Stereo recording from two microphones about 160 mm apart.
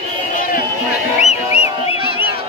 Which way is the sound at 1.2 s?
40° left (ahead or behind).